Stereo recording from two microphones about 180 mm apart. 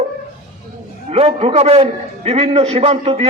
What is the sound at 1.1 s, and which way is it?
A man's voice, 35° right (ahead or behind).